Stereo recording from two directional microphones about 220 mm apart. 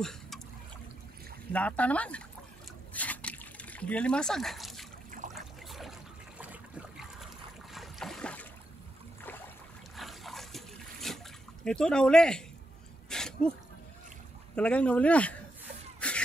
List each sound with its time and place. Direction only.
0.0 s trickle: centre (ahead or behind)
1.5 s speech: 5° left (ahead or behind)
2.9 s trickle: 5° left (ahead or behind)
7.7 s boat: centre (ahead or behind)
9.9 s splash: centre (ahead or behind)
11.6 s speech: 5° left (ahead or behind)
13.1 s a sound: 5° left (ahead or behind)
14.5 s speech: 5° left (ahead or behind)
16.0 s a sound: 5° left (ahead or behind)